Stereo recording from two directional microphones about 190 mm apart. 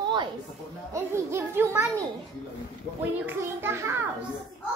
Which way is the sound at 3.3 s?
10° right (ahead or behind).